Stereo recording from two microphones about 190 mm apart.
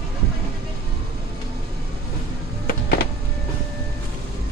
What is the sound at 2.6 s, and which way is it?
Music, 50° left (ahead or behind).